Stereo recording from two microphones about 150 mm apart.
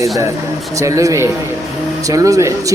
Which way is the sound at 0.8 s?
20° right (ahead or behind).